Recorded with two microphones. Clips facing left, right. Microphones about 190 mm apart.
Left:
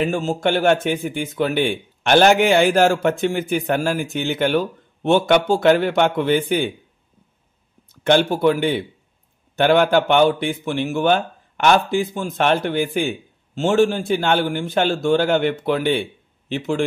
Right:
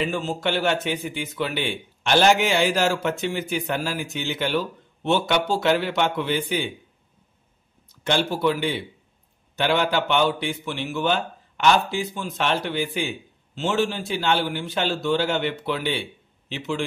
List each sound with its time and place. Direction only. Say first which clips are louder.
0.0 s speech: left 5 dB; 45° left (ahead or behind)
7.9 s speech: left 7 dB; 55° left (ahead or behind)